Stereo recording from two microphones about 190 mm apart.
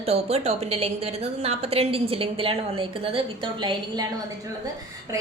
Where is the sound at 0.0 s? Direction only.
35° right (ahead or behind).